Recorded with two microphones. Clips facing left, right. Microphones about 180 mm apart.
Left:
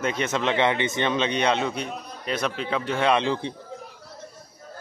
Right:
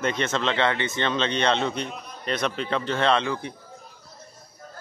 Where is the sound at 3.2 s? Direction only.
25° left (ahead or behind).